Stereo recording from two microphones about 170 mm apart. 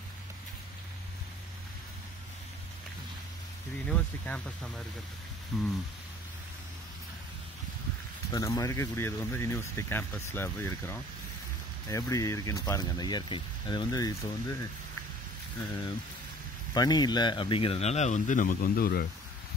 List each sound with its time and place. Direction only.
3.8 s speech: 5° left (ahead or behind)
8.3 s speech: 20° left (ahead or behind)
16.7 s speech: 25° left (ahead or behind); by 19.0 s 60° left (ahead or behind)